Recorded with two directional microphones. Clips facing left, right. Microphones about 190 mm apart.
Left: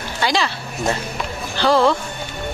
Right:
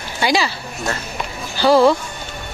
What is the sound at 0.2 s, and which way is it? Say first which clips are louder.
Speech: right 2 dB; 10° right (ahead or behind).